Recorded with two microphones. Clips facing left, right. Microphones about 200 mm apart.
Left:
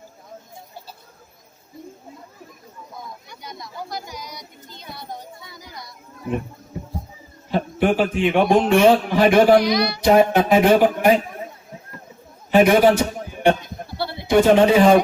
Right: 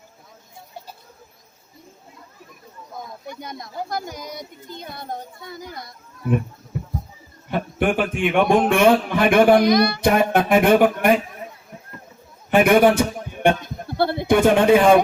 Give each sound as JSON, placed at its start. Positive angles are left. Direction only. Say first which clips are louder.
{"t": 3.2, "sound": "speech", "louder": "right 4 dB", "side_deg": -50}
{"t": 7.5, "sound": "a man's voice", "louder": "left 2 dB", "side_deg": -55}
{"t": 12.5, "sound": "a man's voice", "louder": "left 1 dB", "side_deg": -55}
{"t": 13.4, "sound": "a sound", "louder": "left 1 dB", "side_deg": -55}